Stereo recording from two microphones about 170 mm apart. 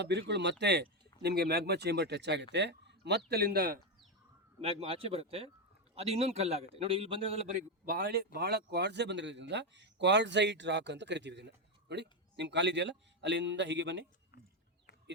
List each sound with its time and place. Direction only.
0.0 s speech: 85° right
0.6 s speech: 80° right
4.6 s a man's voice: 35° right (ahead or behind)
7.9 s speech: 60° right (ahead or behind); by 14.0 s 90° right